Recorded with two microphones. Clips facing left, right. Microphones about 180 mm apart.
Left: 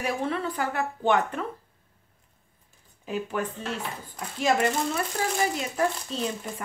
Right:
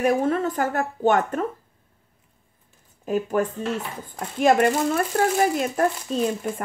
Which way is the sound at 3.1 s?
45° right (ahead or behind).